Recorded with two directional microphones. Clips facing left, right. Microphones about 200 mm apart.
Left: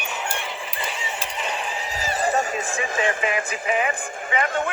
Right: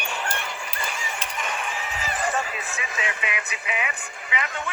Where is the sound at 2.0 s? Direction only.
35° left (ahead or behind).